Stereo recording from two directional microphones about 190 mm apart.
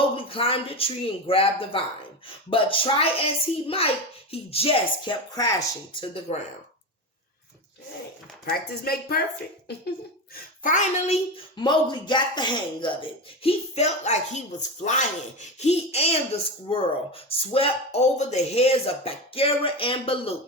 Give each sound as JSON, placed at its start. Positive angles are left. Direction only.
{"t": 0.2, "sound": "speech", "side_deg": 30}
{"t": 8.4, "sound": "speech", "side_deg": 55}
{"t": 10.6, "sound": "speech", "side_deg": 40}
{"t": 11.5, "sound": "speech", "side_deg": 25}
{"t": 15.5, "sound": "speech", "side_deg": 35}